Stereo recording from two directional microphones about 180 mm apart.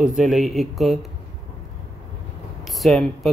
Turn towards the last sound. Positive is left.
turn(degrees=0)  # may be behind; listen again after turning